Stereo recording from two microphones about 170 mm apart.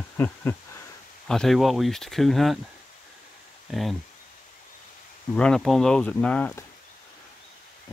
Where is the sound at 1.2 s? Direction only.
5° left (ahead or behind).